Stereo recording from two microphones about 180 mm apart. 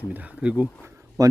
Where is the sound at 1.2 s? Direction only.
20° right (ahead or behind).